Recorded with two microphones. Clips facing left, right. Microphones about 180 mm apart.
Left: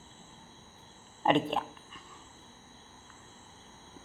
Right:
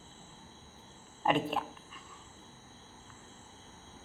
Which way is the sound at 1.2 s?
5° right (ahead or behind).